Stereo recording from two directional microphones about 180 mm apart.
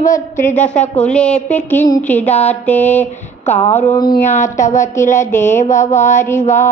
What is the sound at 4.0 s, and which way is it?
Speech, 25° left (ahead or behind).